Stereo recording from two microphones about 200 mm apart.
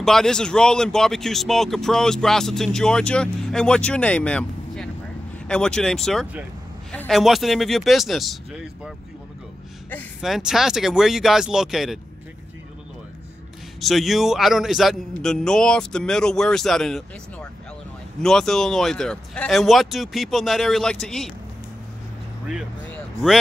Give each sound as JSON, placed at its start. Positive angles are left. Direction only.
{"t": 0.0, "sound": "speech", "side_deg": 0}
{"t": 10.2, "sound": "speech", "side_deg": 0}
{"t": 13.7, "sound": "speech", "side_deg": 0}